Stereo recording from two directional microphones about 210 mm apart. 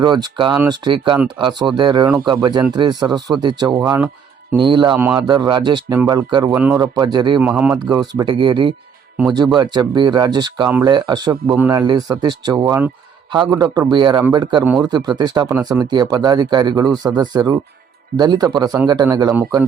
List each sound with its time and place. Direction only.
0.0 s speech: 20° right (ahead or behind)
6.5 s speech: 5° right (ahead or behind)
7.3 s speech: 5° right (ahead or behind)
7.9 s speech: 20° right (ahead or behind)
14.6 s speech: 5° right (ahead or behind)
14.8 s speech: 20° right (ahead or behind)
15.5 s speech: 10° right (ahead or behind)